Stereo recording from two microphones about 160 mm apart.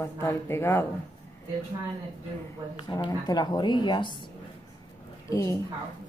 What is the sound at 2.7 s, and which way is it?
A woman's voice, 30° left (ahead or behind).